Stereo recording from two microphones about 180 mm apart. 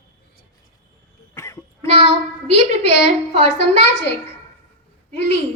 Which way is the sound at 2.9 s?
75° left (ahead or behind).